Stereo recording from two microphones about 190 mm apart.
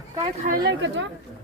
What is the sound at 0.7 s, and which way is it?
Speech, 75° right (ahead or behind).